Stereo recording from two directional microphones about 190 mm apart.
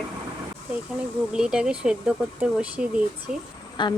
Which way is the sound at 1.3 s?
5° right (ahead or behind).